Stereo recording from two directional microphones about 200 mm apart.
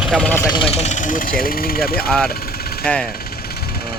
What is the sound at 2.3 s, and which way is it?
Vehicle, 50° left (ahead or behind).